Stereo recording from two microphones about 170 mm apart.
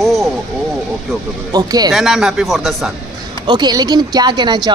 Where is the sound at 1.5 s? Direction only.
25° right (ahead or behind).